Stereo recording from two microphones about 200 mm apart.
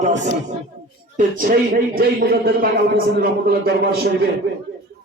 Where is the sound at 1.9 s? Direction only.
50° right (ahead or behind).